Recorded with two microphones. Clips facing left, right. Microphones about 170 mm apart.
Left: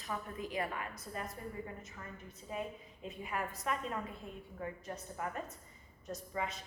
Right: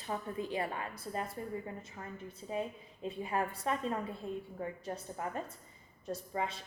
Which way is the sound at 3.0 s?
30° right (ahead or behind).